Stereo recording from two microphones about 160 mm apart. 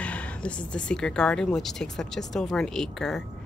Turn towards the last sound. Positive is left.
turn(degrees=5)  # may be behind; listen again after turning